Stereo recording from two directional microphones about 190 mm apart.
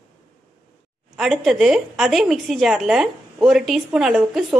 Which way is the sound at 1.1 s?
Centre (ahead or behind).